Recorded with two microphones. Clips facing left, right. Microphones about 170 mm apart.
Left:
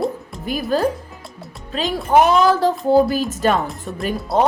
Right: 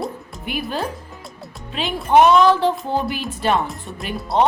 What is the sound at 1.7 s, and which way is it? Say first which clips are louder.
Speech: even; 40° left (ahead or behind).